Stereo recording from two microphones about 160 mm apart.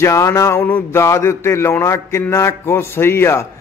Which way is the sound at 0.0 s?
20° left (ahead or behind).